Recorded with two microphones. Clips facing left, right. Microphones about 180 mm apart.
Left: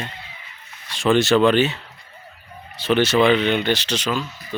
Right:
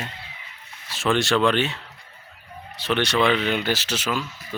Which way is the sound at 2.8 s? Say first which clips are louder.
Left 5 dB; centre (ahead or behind).